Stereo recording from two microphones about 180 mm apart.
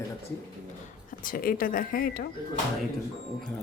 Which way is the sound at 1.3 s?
55° left (ahead or behind).